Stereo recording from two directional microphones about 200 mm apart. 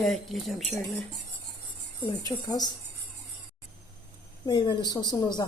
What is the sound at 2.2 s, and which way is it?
Speech, 20° left (ahead or behind).